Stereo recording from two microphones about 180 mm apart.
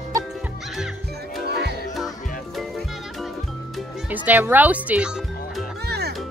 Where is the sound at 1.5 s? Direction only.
65° right (ahead or behind).